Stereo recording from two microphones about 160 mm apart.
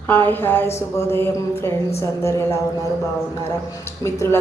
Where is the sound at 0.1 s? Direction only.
10° left (ahead or behind).